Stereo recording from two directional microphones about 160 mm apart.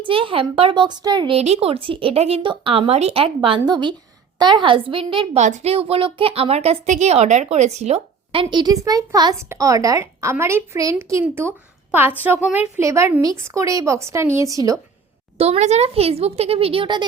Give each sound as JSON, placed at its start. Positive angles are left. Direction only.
{"t": 0.1, "sound": "speech", "side_deg": -35}
{"t": 1.4, "sound": "speech", "side_deg": -40}
{"t": 5.4, "sound": "a woman's voice", "side_deg": -45}
{"t": 15.4, "sound": "speech", "side_deg": -40}